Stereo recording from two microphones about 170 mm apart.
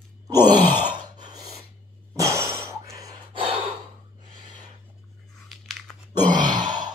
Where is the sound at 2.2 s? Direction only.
15° right (ahead or behind).